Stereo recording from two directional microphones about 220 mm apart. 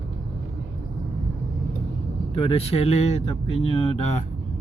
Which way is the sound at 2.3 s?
25° left (ahead or behind).